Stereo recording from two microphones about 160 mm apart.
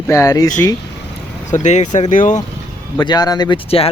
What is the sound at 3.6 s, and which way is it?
Speech, 35° left (ahead or behind).